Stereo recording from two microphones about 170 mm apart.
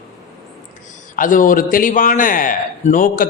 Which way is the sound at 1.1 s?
50° left (ahead or behind).